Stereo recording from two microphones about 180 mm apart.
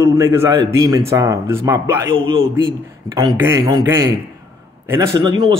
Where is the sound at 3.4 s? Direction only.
15° right (ahead or behind).